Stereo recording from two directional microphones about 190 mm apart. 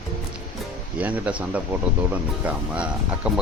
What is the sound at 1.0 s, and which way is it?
Speech, 5° right (ahead or behind).